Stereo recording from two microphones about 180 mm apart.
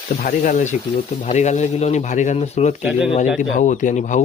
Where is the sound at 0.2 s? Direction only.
50° left (ahead or behind).